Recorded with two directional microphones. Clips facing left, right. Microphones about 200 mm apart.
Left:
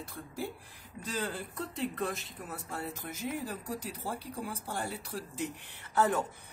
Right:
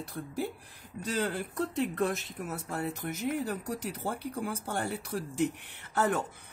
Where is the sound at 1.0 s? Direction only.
65° right (ahead or behind).